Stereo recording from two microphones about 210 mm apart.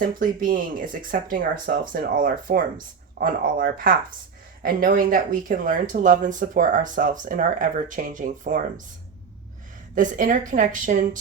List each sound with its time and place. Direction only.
0.2 s speech: 40° right (ahead or behind)
9.9 s speech: 40° right (ahead or behind)